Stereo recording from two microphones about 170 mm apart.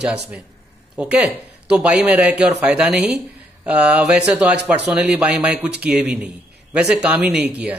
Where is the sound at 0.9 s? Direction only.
5° right (ahead or behind).